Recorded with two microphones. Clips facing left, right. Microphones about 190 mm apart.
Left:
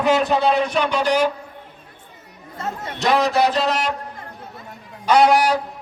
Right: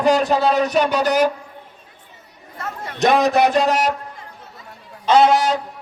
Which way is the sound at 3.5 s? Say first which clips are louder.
Right 4 dB; 45° right (ahead or behind).